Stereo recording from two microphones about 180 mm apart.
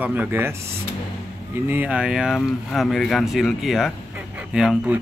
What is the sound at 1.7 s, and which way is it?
Speech, 10° right (ahead or behind).